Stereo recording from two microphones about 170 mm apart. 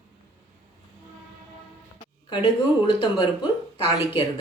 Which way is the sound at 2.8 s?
30° left (ahead or behind).